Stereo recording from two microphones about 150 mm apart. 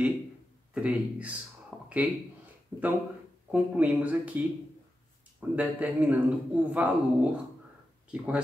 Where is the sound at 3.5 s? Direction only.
10° right (ahead or behind).